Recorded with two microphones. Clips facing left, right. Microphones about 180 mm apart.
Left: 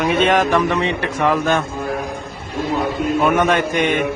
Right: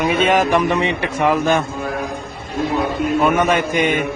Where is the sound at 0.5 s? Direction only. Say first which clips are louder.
Right 1 dB; 15° right (ahead or behind).